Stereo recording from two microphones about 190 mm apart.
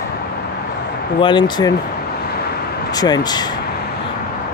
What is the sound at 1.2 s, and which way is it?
Speech, 25° left (ahead or behind).